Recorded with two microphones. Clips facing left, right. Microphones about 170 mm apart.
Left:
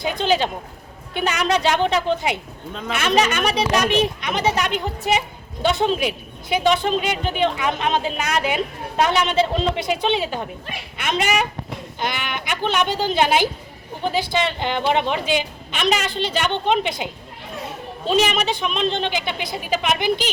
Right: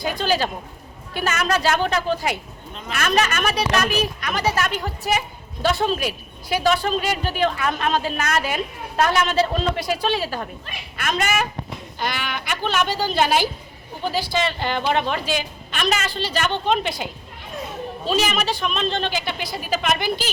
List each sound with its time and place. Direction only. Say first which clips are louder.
0.0 s a woman's voice: left 2 dB; 20° left (ahead or behind)